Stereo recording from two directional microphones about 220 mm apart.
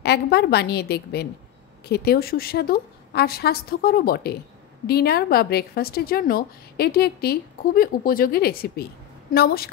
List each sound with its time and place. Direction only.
0.0 s a woman's voice: 50° left (ahead or behind)